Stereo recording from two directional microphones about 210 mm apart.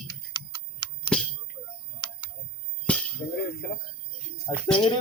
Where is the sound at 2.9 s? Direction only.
5° left (ahead or behind).